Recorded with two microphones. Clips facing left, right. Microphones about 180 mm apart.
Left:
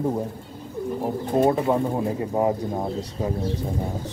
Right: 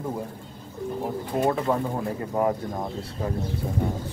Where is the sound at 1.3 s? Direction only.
35° left (ahead or behind).